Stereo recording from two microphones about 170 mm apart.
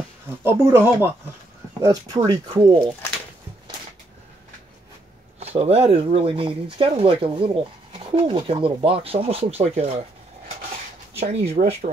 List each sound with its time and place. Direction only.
0.4 s speech: 15° right (ahead or behind)
1.8 s speech: 25° right (ahead or behind)
5.4 s speech: 35° right (ahead or behind)
11.1 s speech: 40° right (ahead or behind)